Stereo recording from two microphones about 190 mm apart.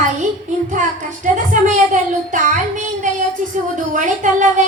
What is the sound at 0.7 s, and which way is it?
Speech, 40° right (ahead or behind).